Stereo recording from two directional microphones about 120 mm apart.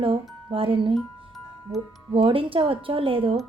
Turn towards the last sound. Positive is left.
turn(degrees=-45)  # may be behind; listen again after turning